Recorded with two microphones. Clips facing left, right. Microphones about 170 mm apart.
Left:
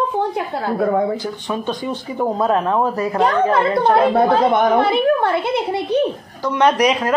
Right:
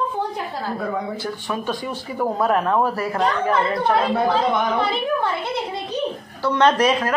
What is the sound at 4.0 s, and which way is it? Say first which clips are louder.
A woman's voice: left 5 dB; 55° left (ahead or behind).